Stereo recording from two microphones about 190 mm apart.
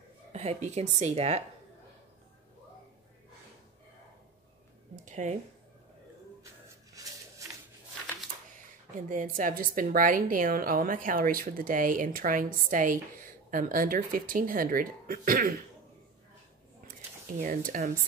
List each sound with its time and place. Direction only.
0.3 s a woman's voice: 35° right (ahead or behind)
5.0 s speech: 40° right (ahead or behind)
6.4 s a sound: 15° right (ahead or behind)
9.1 s a woman's voice: 45° right (ahead or behind)
17.4 s a woman's voice: 45° right (ahead or behind)